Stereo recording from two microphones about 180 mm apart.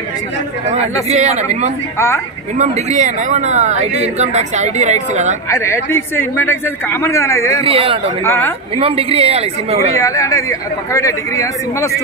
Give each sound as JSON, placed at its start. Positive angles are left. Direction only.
{"t": 1.0, "sound": "a man's voice", "side_deg": -35}
{"t": 2.0, "sound": "a man's voice", "side_deg": 15}
{"t": 2.5, "sound": "a man's voice", "side_deg": -40}
{"t": 5.5, "sound": "a man's voice", "side_deg": 15}
{"t": 7.6, "sound": "a man's voice", "side_deg": -30}
{"t": 8.2, "sound": "a man's voice", "side_deg": 15}
{"t": 8.7, "sound": "a man's voice", "side_deg": -30}
{"t": 9.9, "sound": "a man's voice", "side_deg": 20}